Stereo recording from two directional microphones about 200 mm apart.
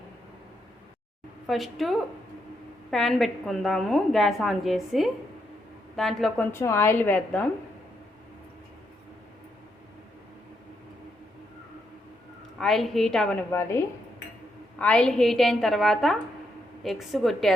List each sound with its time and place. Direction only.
1.5 s a woman's voice: centre (ahead or behind)
12.5 s a woman's voice: centre (ahead or behind)
13.5 s a woman's voice: 15° left (ahead or behind)